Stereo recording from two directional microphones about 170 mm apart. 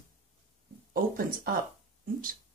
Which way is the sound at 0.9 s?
55° right (ahead or behind).